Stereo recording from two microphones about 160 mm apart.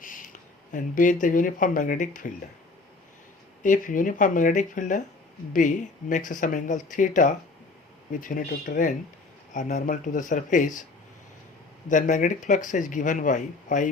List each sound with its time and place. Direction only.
0.7 s speech: 55° left (ahead or behind)
3.6 s speech: 55° left (ahead or behind)
11.9 s speech: 50° left (ahead or behind)